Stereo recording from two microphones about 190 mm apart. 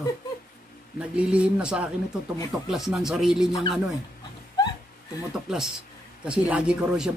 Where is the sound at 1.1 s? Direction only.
5° right (ahead or behind).